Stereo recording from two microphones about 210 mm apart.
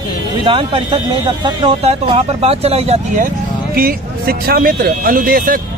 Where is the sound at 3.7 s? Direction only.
45° right (ahead or behind).